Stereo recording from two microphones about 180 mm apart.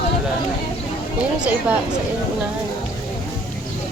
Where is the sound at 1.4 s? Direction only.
5° right (ahead or behind).